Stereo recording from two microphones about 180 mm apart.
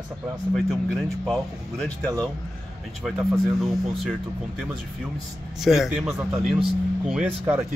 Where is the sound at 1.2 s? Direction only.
Centre (ahead or behind).